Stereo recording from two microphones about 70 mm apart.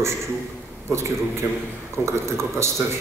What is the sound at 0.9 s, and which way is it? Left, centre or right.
A man's voice, right.